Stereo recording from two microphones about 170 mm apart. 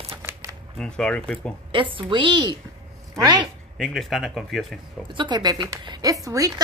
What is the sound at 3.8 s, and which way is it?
Speech, centre (ahead or behind).